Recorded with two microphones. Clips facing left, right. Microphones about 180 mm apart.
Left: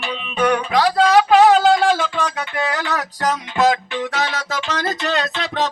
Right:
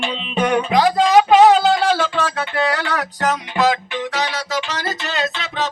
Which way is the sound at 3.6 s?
50° left (ahead or behind).